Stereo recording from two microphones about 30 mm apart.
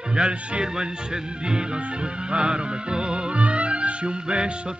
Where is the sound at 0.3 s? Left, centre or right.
Right.